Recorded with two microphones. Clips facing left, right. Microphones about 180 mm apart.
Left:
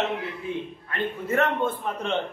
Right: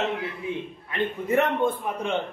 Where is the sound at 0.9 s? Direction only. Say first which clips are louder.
Right 3 dB; 15° right (ahead or behind).